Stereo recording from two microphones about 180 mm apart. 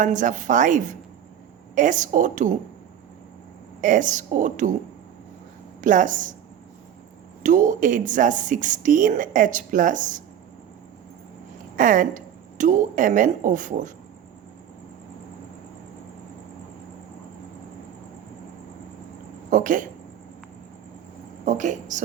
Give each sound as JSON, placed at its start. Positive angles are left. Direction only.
{"t": 0.0, "sound": "speech", "side_deg": -45}
{"t": 3.8, "sound": "speech", "side_deg": -45}
{"t": 5.8, "sound": "speech", "side_deg": -45}
{"t": 7.4, "sound": "speech", "side_deg": -45}
{"t": 11.8, "sound": "speech", "side_deg": -45}
{"t": 19.5, "sound": "speech", "side_deg": -45}
{"t": 21.4, "sound": "speech", "side_deg": -45}